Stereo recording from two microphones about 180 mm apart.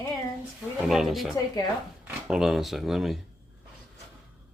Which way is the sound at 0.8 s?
Centre (ahead or behind).